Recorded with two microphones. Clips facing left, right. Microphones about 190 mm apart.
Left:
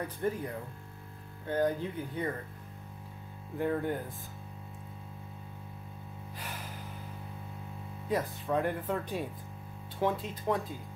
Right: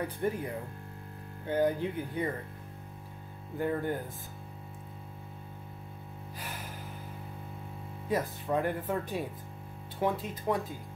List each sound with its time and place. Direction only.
0.2 s speech: 15° right (ahead or behind)
1.5 s speech: 10° right (ahead or behind)
3.5 s speech: centre (ahead or behind)
8.1 s speech: centre (ahead or behind)